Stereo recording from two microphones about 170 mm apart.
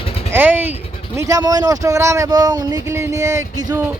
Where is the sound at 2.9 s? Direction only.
15° right (ahead or behind).